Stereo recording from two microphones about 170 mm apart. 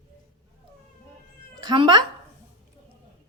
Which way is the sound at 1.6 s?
30° right (ahead or behind).